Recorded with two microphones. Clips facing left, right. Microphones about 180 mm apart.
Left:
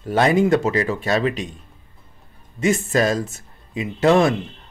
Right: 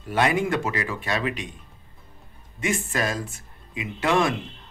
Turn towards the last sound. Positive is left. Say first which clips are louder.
# left 7 dB
turn(degrees=35)  # may be behind; listen again after turning